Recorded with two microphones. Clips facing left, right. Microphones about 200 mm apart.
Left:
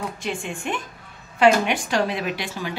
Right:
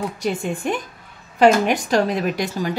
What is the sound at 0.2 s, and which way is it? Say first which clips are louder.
A woman's voice: right 6 dB; 40° right (ahead or behind).